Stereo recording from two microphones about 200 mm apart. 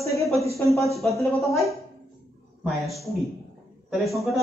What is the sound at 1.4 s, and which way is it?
Speech, centre (ahead or behind).